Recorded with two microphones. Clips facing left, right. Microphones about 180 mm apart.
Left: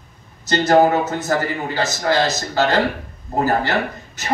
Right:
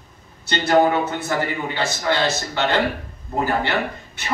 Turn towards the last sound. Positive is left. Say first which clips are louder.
# left 2 dB
turn(degrees=40)  # may be behind; listen again after turning